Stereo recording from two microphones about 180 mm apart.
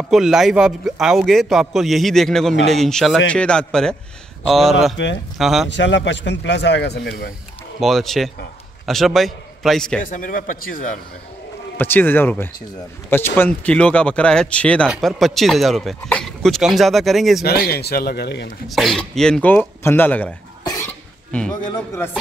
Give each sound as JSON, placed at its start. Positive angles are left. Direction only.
{"t": 0.1, "sound": "a man's voice", "side_deg": 0}
{"t": 5.7, "sound": "speech", "side_deg": 85}
{"t": 7.8, "sound": "a man's voice", "side_deg": 0}
{"t": 10.0, "sound": "speech", "side_deg": 50}
{"t": 11.7, "sound": "a man's voice", "side_deg": 10}
{"t": 17.5, "sound": "speech", "side_deg": 60}
{"t": 18.7, "sound": "speech", "side_deg": 0}